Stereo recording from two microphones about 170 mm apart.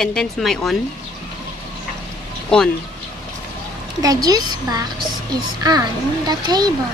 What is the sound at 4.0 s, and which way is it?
Speech, 20° right (ahead or behind).